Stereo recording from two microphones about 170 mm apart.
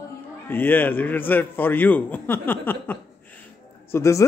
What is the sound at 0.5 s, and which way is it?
A man's voice, 10° left (ahead or behind).